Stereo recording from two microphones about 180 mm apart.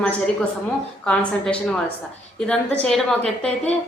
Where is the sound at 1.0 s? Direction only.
5° left (ahead or behind).